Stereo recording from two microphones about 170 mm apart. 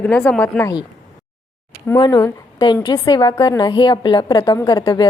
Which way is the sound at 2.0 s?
20° left (ahead or behind).